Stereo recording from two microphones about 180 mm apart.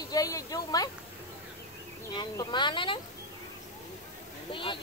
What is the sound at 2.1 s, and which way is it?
Speech, 25° left (ahead or behind).